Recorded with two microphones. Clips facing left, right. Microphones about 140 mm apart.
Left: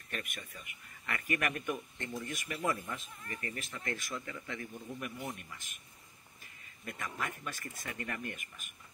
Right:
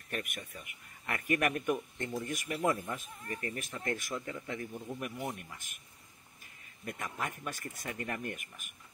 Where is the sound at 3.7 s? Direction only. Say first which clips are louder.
Right 4 dB; 15° right (ahead or behind).